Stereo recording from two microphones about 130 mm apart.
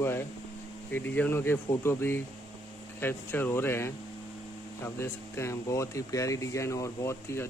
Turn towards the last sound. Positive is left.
turn(degrees=20)  # may be behind; listen again after turning